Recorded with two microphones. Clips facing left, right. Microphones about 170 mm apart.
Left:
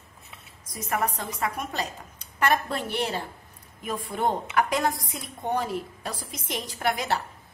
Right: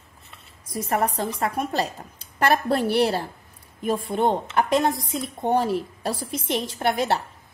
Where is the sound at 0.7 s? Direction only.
30° right (ahead or behind).